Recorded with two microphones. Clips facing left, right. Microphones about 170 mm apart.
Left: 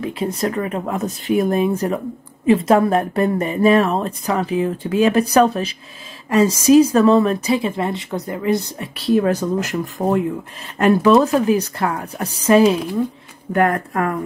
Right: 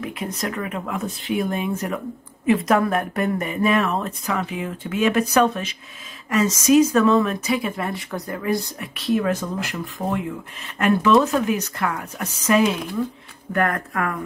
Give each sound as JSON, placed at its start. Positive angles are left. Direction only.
{"t": 0.0, "sound": "a woman's voice", "side_deg": 30}